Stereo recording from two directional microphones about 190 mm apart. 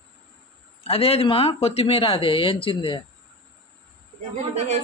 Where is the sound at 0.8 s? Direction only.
30° left (ahead or behind).